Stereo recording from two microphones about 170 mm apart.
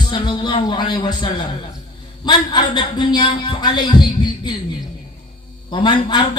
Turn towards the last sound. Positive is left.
turn(degrees=25)  # may be behind; listen again after turning